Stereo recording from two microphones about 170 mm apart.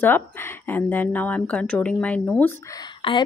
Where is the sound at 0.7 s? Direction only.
10° left (ahead or behind).